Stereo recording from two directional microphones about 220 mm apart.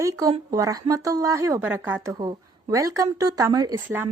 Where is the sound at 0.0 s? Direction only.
15° right (ahead or behind).